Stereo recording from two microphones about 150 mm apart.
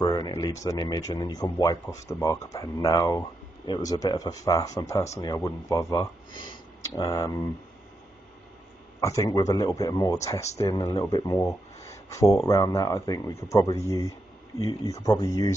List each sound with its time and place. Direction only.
0.0 s speech: 25° left (ahead or behind)
9.0 s speech: 20° left (ahead or behind)
11.3 s a sound: 20° left (ahead or behind)
12.4 s speech: 20° left (ahead or behind)